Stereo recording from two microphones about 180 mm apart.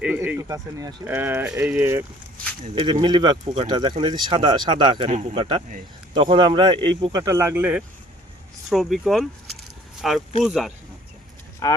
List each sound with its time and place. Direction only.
0.0 s speech: 5° right (ahead or behind)
2.8 s speech: 25° right (ahead or behind); by 10.7 s centre (ahead or behind)
11.6 s speech: 20° left (ahead or behind)